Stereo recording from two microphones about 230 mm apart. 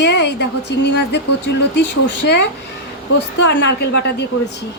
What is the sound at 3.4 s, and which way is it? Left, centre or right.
Speech, left.